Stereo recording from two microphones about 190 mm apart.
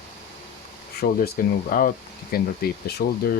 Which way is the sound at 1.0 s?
50° left (ahead or behind).